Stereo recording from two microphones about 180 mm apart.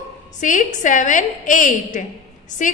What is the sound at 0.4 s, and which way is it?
A woman's voice, 45° left (ahead or behind).